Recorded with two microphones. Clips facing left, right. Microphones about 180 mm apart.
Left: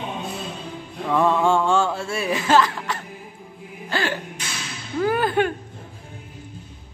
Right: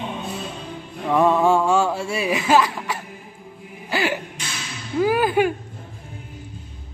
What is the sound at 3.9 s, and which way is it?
Music, 10° right (ahead or behind).